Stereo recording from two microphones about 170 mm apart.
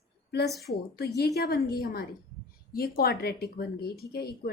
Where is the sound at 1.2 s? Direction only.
65° left (ahead or behind).